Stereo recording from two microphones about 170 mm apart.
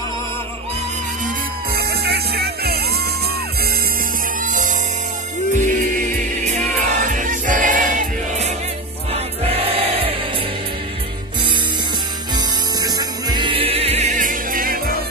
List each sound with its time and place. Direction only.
1.8 s music: 70° right (ahead or behind)
4.4 s music: 50° right (ahead or behind)
7.1 s choir: 50° right (ahead or behind)
9.1 s choir: 35° right (ahead or behind)
12.4 s music: 25° right (ahead or behind); by 14.8 s 55° right (ahead or behind)